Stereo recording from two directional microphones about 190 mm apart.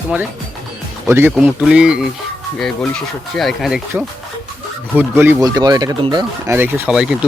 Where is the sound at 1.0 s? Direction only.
10° right (ahead or behind).